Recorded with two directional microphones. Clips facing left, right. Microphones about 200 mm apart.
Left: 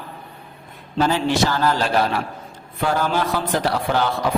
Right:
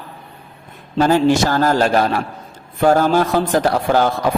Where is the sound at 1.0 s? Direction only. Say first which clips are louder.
Right 5 dB; 45° right (ahead or behind).